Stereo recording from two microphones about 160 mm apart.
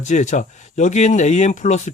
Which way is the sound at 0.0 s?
50° left (ahead or behind).